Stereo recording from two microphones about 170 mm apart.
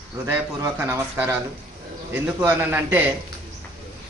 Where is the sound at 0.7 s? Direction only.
10° right (ahead or behind).